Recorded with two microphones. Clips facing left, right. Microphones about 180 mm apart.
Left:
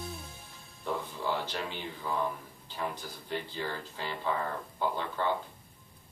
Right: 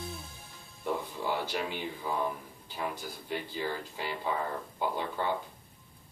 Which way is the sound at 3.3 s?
10° right (ahead or behind).